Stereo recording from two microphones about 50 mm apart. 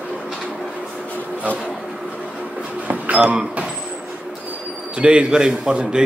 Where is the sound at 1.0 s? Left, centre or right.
Left.